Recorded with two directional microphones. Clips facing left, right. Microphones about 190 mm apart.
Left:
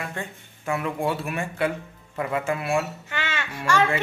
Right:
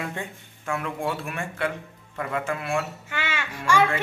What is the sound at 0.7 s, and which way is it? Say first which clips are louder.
Speech: left 3 dB; 5° left (ahead or behind).